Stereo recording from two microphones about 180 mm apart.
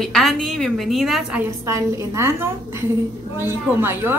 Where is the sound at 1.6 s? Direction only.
15° right (ahead or behind).